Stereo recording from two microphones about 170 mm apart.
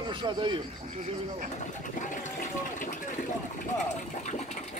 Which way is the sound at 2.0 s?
50° left (ahead or behind).